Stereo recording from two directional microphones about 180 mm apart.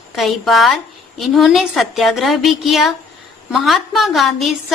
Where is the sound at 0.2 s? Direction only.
Centre (ahead or behind).